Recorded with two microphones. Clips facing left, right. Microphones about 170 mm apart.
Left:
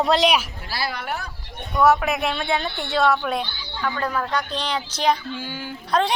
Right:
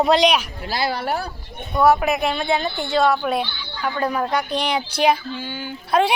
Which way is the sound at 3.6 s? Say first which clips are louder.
Even; 30° left (ahead or behind).